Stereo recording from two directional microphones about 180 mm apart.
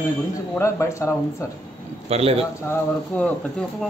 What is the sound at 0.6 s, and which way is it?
Speech, 15° left (ahead or behind).